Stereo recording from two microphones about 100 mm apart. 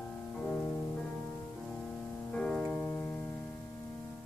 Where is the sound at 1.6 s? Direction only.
5° left (ahead or behind).